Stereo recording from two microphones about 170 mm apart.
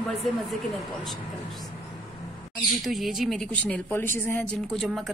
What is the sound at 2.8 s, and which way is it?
A woman's voice, centre (ahead or behind).